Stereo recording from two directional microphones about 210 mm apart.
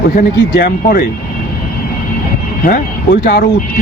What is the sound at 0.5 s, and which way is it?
Speech, 45° left (ahead or behind).